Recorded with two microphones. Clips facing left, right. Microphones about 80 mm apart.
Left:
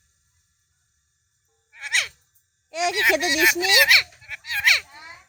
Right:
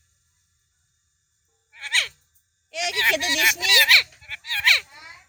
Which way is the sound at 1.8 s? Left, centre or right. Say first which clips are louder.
Even; centre.